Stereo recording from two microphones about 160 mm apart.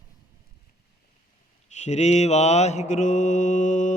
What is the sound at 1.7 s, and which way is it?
Mantra, 45° left (ahead or behind).